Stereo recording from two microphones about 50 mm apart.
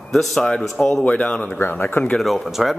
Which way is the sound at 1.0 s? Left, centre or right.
Left.